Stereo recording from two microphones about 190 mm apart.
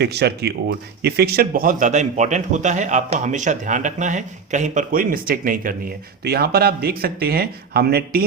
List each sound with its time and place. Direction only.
0.0 s speech: 60° right (ahead or behind)